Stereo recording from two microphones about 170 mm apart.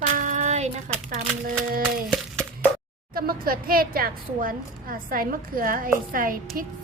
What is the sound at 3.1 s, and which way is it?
A woman's voice, 60° right (ahead or behind).